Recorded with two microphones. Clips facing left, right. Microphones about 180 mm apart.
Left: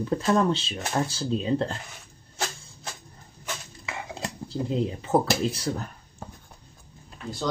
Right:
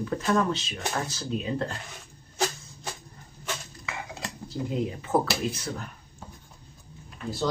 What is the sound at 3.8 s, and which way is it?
Dishes, 30° left (ahead or behind).